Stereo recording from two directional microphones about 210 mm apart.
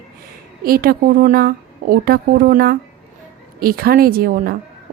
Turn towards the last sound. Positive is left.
turn(degrees=-45)  # may be behind; listen again after turning